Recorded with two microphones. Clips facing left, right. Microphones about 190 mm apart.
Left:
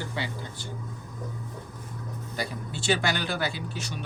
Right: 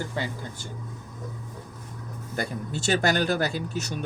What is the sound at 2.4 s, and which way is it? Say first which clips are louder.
Speech: right 4 dB; 45° right (ahead or behind).